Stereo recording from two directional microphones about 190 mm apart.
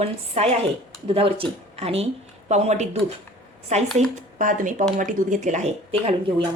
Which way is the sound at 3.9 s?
45° right (ahead or behind).